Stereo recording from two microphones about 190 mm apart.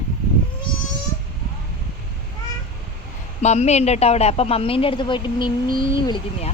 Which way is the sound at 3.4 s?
35° left (ahead or behind).